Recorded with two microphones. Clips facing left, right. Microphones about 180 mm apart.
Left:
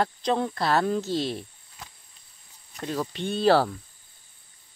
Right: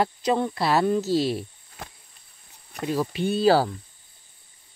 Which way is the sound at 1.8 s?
60° right (ahead or behind).